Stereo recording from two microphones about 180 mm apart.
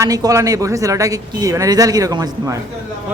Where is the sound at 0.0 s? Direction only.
20° right (ahead or behind).